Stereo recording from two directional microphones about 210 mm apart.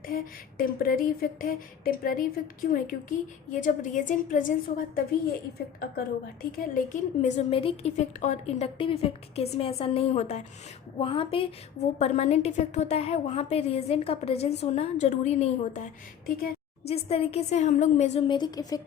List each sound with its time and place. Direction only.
0.6 s a woman's voice: 45° left (ahead or behind)
6.0 s a woman's voice: 45° left (ahead or behind)
16.9 s a woman's voice: 30° left (ahead or behind)